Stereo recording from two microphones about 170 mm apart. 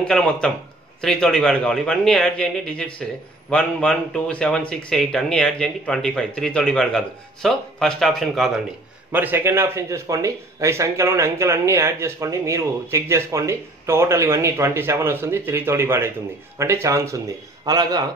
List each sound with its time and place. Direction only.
0.0 s speech: 5° left (ahead or behind)
9.1 s a man's voice: 10° right (ahead or behind)